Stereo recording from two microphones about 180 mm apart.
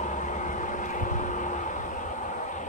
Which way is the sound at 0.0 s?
45° left (ahead or behind).